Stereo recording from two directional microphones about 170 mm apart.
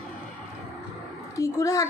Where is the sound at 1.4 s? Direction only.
20° left (ahead or behind).